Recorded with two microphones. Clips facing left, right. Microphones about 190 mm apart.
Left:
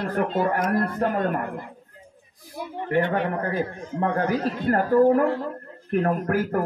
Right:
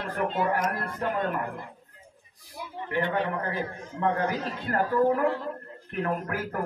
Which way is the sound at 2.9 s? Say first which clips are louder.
Left 5 dB; 55° left (ahead or behind).